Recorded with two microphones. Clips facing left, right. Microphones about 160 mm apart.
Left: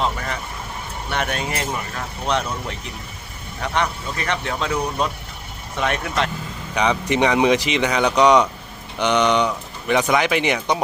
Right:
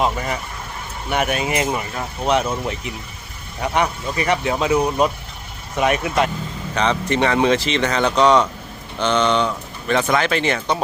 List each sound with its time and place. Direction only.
1.1 s speech: 5° right (ahead or behind)
6.7 s speech: 15° left (ahead or behind)